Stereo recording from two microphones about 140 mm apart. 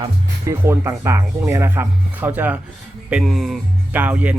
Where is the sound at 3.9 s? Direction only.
10° right (ahead or behind).